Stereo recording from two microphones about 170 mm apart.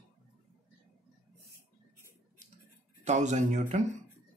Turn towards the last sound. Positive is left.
turn(degrees=-45)  # may be behind; listen again after turning